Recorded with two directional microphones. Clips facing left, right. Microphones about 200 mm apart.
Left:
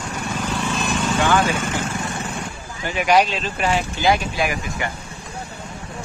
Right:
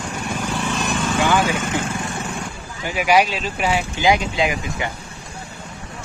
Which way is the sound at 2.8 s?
5° right (ahead or behind).